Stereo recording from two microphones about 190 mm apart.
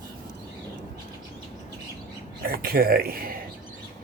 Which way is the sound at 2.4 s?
50° right (ahead or behind).